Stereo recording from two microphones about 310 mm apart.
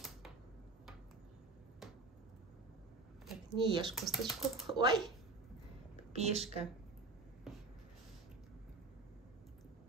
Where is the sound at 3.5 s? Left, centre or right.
Centre.